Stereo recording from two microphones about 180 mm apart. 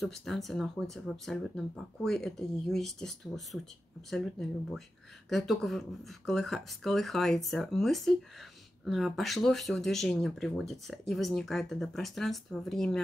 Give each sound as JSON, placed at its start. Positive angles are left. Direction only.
{"t": 0.0, "sound": "speech", "side_deg": 0}